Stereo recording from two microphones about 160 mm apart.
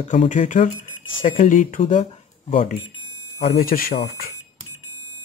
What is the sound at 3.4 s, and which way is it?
Speech, 65° left (ahead or behind).